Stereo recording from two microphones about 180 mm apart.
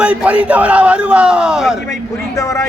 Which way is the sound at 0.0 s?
5° right (ahead or behind).